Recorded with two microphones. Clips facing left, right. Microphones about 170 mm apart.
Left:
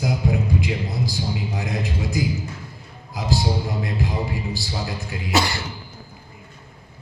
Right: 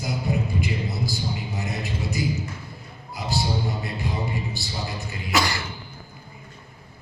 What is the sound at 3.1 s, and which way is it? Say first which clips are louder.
A man's voice: left 3 dB; 90° left.